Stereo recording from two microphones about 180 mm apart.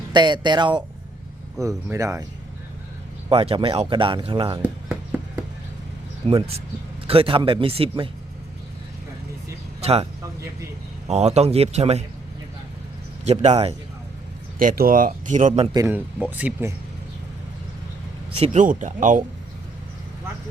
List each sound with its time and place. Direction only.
0.1 s speech: 25° right (ahead or behind)
3.2 s speech: 30° right (ahead or behind)
6.2 s speech: 35° right (ahead or behind)
9.8 s speech: 35° right (ahead or behind)
11.1 s speech: 35° right (ahead or behind)
13.2 s speech: 35° right (ahead or behind)
14.6 s speech: 50° right (ahead or behind)
15.7 s speech: 20° right (ahead or behind)
18.3 s speech: 40° right (ahead or behind)